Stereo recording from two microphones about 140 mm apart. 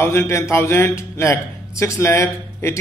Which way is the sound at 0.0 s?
20° left (ahead or behind).